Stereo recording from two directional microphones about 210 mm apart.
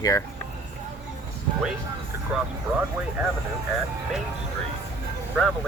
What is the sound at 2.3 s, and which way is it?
Speech, 5° right (ahead or behind).